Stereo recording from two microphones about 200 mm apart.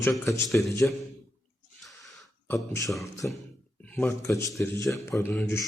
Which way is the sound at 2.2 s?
10° left (ahead or behind).